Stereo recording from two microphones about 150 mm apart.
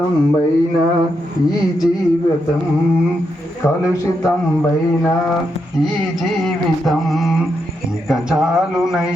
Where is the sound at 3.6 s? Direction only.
20° left (ahead or behind).